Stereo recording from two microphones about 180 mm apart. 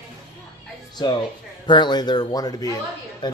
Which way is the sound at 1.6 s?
25° left (ahead or behind).